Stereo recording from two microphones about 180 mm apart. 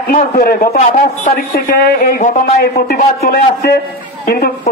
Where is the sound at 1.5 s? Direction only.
55° left (ahead or behind).